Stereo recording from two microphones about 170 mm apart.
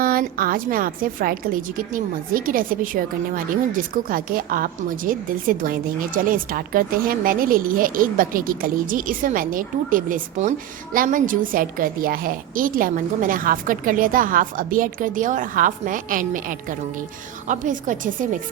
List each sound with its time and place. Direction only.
0.0 s a woman's voice: 60° right (ahead or behind)